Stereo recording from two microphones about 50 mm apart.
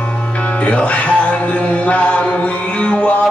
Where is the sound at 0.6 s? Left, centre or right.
Left.